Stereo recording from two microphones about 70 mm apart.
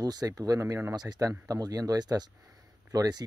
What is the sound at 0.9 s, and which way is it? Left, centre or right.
Speech, right.